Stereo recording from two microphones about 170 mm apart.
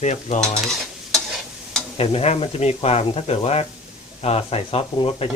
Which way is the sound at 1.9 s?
35° left (ahead or behind).